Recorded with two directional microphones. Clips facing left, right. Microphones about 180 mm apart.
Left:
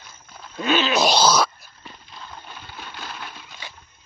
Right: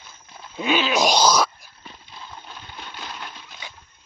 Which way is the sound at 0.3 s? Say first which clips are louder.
Left 1 dB; 10° right (ahead or behind).